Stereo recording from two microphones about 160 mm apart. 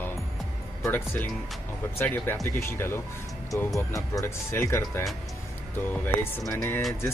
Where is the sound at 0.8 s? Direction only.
15° left (ahead or behind).